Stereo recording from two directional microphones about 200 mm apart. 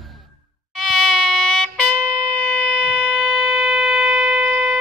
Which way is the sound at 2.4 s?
5° left (ahead or behind).